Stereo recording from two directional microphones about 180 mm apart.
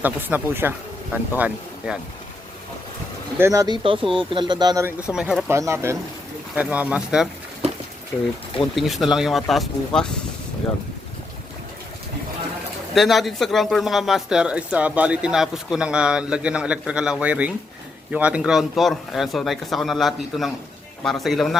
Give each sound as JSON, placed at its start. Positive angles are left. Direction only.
{"t": 0.0, "sound": "speech", "side_deg": -10}
{"t": 3.3, "sound": "speech", "side_deg": -15}
{"t": 5.5, "sound": "speech", "side_deg": -15}
{"t": 8.7, "sound": "speech", "side_deg": 0}
{"t": 12.9, "sound": "speech", "side_deg": 0}